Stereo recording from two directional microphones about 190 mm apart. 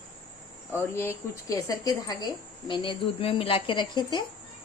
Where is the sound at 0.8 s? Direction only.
15° left (ahead or behind).